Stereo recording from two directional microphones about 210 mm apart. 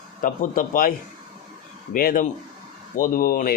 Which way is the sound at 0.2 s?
40° left (ahead or behind).